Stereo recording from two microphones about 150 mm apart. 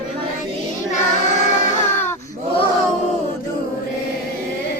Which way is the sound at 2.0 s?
15° left (ahead or behind).